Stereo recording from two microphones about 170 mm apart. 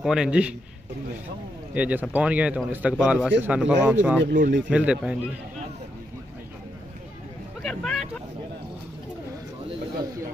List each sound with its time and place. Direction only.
0.0 s a man's voice: 5° right (ahead or behind)
1.7 s speech: 10° right (ahead or behind)
4.4 s speech: 75° right (ahead or behind)
4.6 s speech: 5° right (ahead or behind)
7.6 s vehicle: centre (ahead or behind)